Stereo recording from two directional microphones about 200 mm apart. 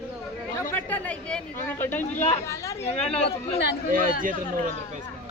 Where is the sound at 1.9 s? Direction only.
35° left (ahead or behind).